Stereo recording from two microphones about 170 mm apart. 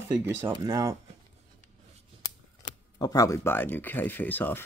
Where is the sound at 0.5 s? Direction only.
20° right (ahead or behind).